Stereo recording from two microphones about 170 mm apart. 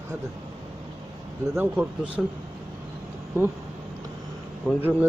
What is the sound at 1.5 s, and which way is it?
Speech, 10° right (ahead or behind).